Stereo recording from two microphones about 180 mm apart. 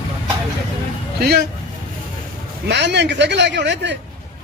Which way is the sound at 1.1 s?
60° right (ahead or behind).